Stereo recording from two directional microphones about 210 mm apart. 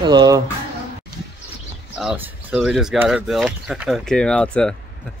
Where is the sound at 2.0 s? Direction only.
5° right (ahead or behind).